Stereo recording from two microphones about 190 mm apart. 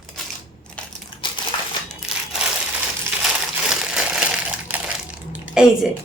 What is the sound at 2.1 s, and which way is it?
Crushing, 5° right (ahead or behind).